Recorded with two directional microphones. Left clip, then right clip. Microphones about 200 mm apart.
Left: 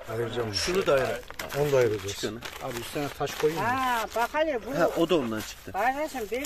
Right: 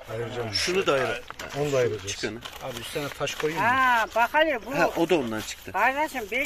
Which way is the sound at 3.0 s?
50° left (ahead or behind).